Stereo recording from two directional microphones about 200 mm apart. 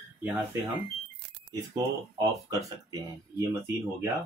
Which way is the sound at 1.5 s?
20° right (ahead or behind).